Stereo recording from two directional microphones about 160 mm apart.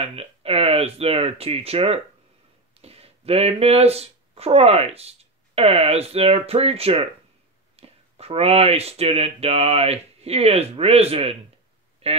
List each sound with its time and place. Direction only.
0.0 s speech: 40° right (ahead or behind)